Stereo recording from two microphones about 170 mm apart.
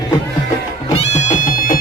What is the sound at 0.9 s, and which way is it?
Music, 45° left (ahead or behind).